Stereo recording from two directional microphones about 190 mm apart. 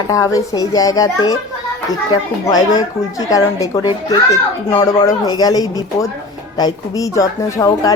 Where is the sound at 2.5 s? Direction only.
20° left (ahead or behind).